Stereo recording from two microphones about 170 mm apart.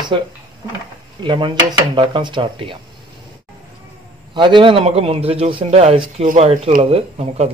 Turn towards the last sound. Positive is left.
turn(degrees=-35)  # may be behind; listen again after turning